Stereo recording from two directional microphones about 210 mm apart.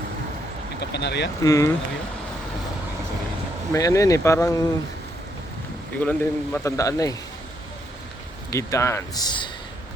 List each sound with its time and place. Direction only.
0.8 s speech: 55° left (ahead or behind)
1.5 s a man's voice: 15° left (ahead or behind)
3.7 s a man's voice: 15° left (ahead or behind)
6.0 s a man's voice: 5° left (ahead or behind)
8.4 s a man's voice: 15° left (ahead or behind)